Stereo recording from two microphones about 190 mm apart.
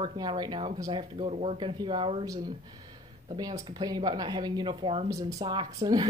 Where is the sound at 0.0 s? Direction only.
25° right (ahead or behind).